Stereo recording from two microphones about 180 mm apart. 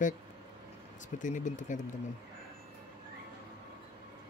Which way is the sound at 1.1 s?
45° left (ahead or behind).